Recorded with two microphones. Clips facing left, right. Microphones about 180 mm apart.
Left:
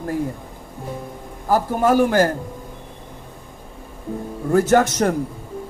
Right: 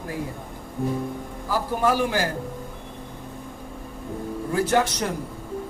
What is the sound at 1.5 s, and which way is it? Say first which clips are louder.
Speech: left 6 dB; 50° left (ahead or behind).